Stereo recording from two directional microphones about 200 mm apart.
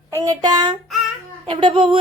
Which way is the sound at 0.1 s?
15° right (ahead or behind).